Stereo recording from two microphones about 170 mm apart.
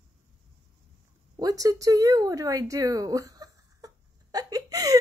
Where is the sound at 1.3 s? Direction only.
20° right (ahead or behind).